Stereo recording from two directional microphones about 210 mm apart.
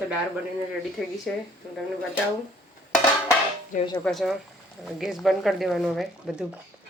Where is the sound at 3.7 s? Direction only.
35° left (ahead or behind).